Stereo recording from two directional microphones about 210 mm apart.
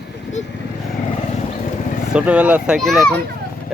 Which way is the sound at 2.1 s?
5° right (ahead or behind).